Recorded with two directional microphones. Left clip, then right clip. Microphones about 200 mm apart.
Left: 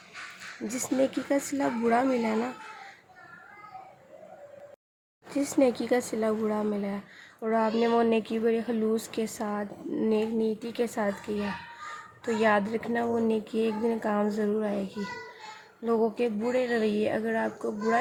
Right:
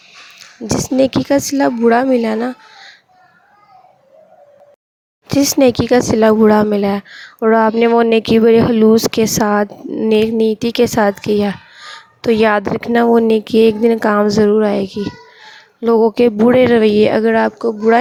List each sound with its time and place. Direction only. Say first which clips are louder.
0.9 s speech: right 13 dB; 50° right (ahead or behind)
5.3 s speech: right 13 dB; 55° right (ahead or behind)
16.0 s speech: right 17 dB; 65° right (ahead or behind); by 18.0 s 50° right (ahead or behind)